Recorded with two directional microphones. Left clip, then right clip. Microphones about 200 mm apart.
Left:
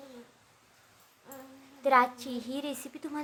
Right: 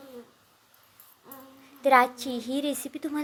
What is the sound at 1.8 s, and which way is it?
A woman's voice, 20° right (ahead or behind).